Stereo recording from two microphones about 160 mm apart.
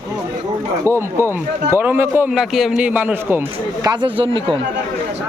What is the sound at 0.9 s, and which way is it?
Speech, 15° right (ahead or behind).